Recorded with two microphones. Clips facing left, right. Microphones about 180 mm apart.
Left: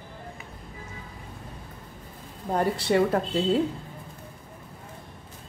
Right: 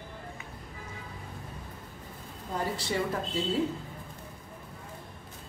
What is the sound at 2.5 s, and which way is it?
Speech, 65° left (ahead or behind).